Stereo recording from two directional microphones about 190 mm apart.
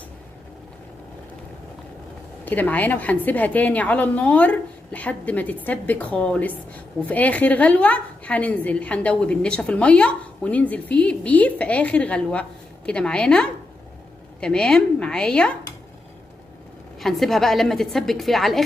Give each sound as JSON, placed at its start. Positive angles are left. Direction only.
{"t": 2.4, "sound": "a woman's voice", "side_deg": 10}
{"t": 17.0, "sound": "a woman's voice", "side_deg": 0}